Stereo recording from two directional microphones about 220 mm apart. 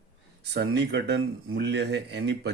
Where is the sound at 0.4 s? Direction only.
50° right (ahead or behind).